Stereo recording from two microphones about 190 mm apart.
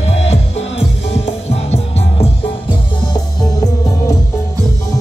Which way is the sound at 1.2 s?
35° left (ahead or behind).